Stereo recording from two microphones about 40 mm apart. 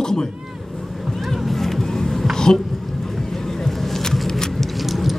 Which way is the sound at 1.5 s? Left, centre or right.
Centre.